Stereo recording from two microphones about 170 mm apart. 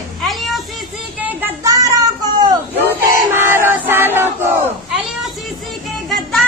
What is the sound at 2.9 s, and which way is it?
Battle cry, 15° right (ahead or behind).